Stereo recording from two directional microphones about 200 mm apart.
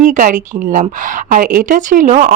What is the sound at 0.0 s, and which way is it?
A woman's voice, 40° right (ahead or behind).